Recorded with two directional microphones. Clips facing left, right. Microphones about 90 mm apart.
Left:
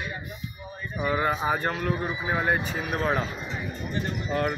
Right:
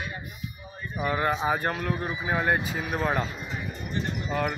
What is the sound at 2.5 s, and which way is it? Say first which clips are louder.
Speech: even; 5° right (ahead or behind).